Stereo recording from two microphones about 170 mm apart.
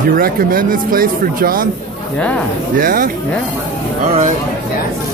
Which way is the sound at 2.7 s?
55° right (ahead or behind).